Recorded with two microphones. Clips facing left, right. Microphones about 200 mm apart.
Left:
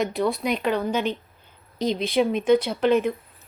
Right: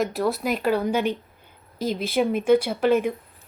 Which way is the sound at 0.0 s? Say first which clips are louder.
Even; centre (ahead or behind).